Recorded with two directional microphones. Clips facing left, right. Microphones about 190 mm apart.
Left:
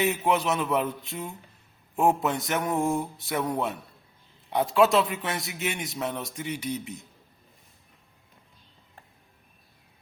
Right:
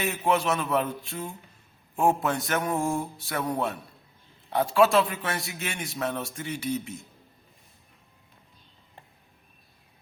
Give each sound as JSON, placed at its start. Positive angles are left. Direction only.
{"t": 0.0, "sound": "a man's voice", "side_deg": 20}
{"t": 4.4, "sound": "a man's voice", "side_deg": 20}